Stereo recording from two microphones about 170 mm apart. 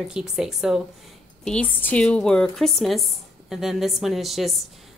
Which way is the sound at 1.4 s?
5° left (ahead or behind).